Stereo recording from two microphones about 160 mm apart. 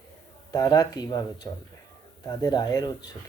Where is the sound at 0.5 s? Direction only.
20° left (ahead or behind).